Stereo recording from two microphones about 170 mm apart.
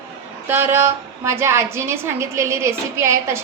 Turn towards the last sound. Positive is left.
turn(degrees=-15)  # may be behind; listen again after turning